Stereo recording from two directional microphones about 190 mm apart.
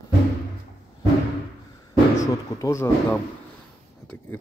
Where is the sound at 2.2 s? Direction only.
15° left (ahead or behind).